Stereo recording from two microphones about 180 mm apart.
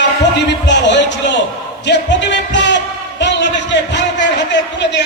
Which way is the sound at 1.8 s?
85° left.